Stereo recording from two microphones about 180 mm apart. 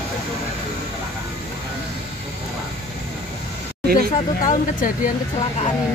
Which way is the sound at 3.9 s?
45° left (ahead or behind).